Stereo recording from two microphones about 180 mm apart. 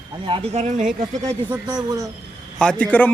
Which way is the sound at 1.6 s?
25° right (ahead or behind).